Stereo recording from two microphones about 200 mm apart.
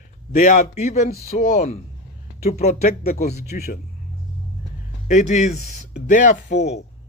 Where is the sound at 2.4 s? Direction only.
35° left (ahead or behind).